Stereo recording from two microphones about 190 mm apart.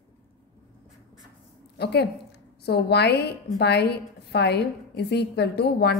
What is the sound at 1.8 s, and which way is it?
A woman's voice, 60° left (ahead or behind).